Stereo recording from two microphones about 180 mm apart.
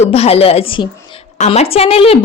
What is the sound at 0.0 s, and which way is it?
A woman's voice, 35° left (ahead or behind).